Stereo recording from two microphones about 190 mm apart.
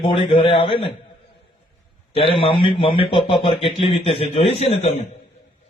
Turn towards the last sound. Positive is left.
turn(degrees=30)  # may be behind; listen again after turning